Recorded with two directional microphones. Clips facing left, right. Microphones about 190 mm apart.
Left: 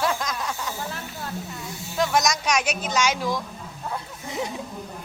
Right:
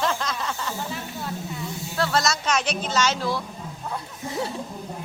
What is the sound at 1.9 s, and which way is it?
Speech, 15° left (ahead or behind).